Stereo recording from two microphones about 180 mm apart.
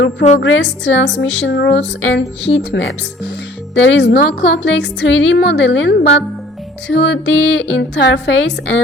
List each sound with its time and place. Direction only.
0.3 s a woman's voice: 80° left
6.8 s a woman's voice: 80° left